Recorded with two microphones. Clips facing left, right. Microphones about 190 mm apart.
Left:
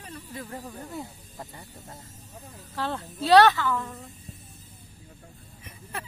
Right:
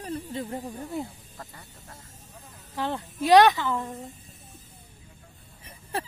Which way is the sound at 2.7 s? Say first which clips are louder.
Right 1 dB; 15° right (ahead or behind).